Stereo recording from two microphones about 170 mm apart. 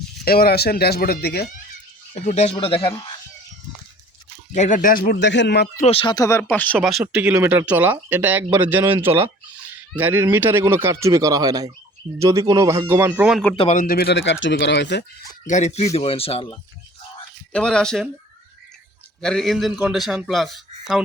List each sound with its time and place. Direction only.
0.3 s speech: 65° left (ahead or behind)
2.1 s speech: 40° left (ahead or behind)
4.5 s speech: 45° left (ahead or behind); by 5.6 s 85° left
5.8 s speech: 35° left (ahead or behind)
6.1 s speech: 15° left (ahead or behind)
6.7 s speech: 5° right (ahead or behind)
13.7 s speech: 55° left (ahead or behind); by 15.0 s 90° left
15.4 s speech: 45° left (ahead or behind)
17.5 s a man's voice: 5° left (ahead or behind)
19.2 s a man's voice: centre (ahead or behind)